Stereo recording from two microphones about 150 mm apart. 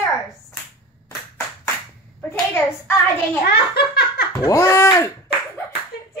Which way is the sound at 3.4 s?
90° left.